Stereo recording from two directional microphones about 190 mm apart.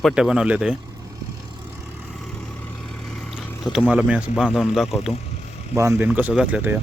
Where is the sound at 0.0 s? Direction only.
5° right (ahead or behind).